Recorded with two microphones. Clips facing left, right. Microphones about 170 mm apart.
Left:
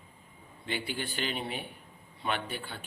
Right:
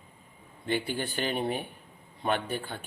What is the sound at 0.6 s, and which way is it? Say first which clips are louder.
Speech: right 5 dB; 45° right (ahead or behind).